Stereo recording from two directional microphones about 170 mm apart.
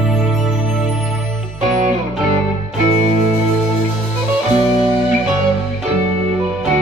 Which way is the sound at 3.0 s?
40° right (ahead or behind).